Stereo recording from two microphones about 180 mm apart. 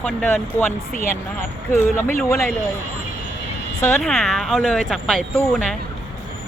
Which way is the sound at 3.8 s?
10° left (ahead or behind).